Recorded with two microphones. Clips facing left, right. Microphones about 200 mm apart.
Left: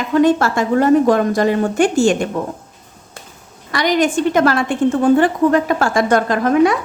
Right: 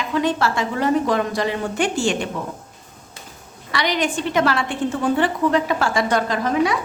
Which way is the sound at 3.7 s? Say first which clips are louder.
Left 6 dB; 45° left (ahead or behind).